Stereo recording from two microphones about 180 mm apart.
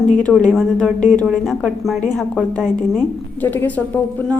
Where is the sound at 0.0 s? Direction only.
45° left (ahead or behind).